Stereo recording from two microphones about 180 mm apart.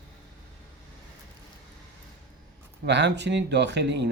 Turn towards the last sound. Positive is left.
turn(degrees=-70)  # may be behind; listen again after turning